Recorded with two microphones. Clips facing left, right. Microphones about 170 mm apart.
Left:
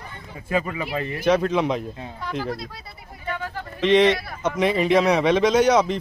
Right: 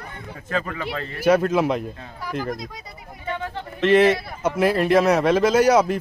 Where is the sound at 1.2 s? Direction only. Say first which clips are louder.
Right 2 dB; 5° right (ahead or behind).